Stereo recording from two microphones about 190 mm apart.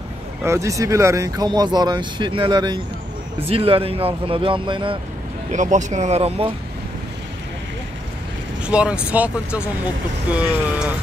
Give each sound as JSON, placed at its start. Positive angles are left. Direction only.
{"t": 0.4, "sound": "speech", "side_deg": -15}
{"t": 5.5, "sound": "speech", "side_deg": -40}
{"t": 8.6, "sound": "speech", "side_deg": -5}